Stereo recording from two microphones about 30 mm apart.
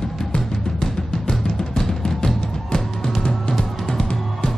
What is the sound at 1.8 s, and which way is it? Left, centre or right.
Music, centre.